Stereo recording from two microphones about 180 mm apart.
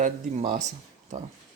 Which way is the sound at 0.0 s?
45° right (ahead or behind).